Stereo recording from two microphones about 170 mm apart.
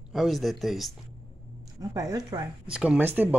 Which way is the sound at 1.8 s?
20° right (ahead or behind).